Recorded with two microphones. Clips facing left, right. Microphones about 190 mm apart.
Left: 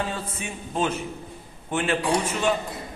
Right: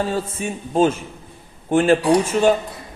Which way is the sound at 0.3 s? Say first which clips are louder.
Right 10 dB; 45° right (ahead or behind).